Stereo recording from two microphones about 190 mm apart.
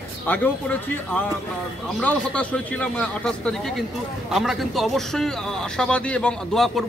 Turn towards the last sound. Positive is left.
turn(degrees=0)  # may be behind; listen again after turning